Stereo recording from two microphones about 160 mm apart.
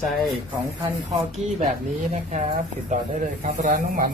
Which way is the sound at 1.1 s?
45° right (ahead or behind).